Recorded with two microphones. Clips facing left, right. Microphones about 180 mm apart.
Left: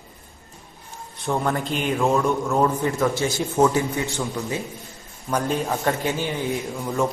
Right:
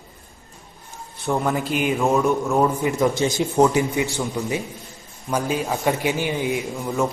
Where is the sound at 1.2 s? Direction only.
5° right (ahead or behind).